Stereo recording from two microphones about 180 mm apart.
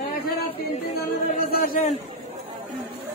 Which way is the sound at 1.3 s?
50° left (ahead or behind).